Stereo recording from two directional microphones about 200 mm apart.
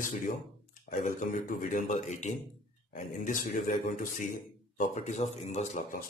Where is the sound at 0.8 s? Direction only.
40° left (ahead or behind).